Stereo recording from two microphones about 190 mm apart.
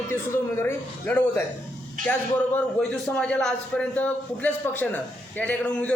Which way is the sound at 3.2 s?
5° left (ahead or behind).